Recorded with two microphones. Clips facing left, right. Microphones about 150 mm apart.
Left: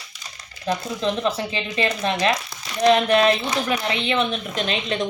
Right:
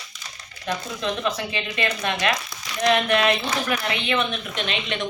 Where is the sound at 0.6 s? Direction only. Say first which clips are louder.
Left 4 dB; 30° left (ahead or behind).